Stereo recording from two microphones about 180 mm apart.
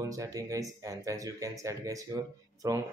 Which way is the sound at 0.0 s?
20° right (ahead or behind).